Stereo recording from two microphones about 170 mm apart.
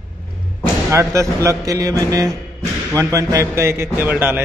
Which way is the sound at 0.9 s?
15° right (ahead or behind).